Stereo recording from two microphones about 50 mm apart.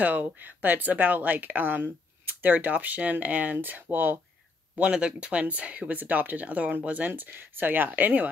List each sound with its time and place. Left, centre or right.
0.0 s speech: right
4.9 s speech: centre; by 8.3 s right